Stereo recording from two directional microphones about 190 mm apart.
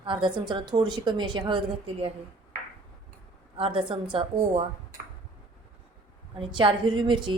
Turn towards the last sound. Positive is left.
turn(degrees=-25)  # may be behind; listen again after turning